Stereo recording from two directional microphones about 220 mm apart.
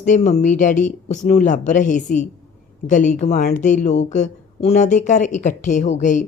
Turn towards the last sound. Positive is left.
turn(degrees=35)  # may be behind; listen again after turning